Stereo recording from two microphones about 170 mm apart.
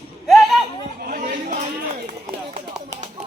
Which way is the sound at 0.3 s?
Centre (ahead or behind).